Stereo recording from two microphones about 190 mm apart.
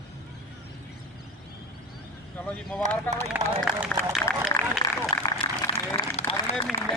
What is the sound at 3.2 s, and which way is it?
Speech, 5° right (ahead or behind).